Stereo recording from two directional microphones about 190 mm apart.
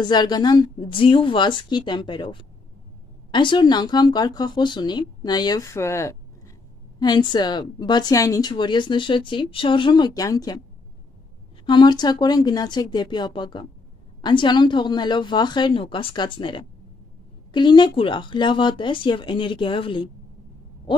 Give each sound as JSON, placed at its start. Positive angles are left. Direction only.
{"t": 0.0, "sound": "a woman's voice", "side_deg": 20}
{"t": 11.6, "sound": "a woman's voice", "side_deg": 25}